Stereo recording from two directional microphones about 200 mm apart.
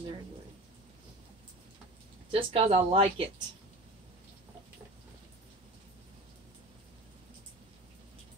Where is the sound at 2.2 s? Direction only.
25° right (ahead or behind).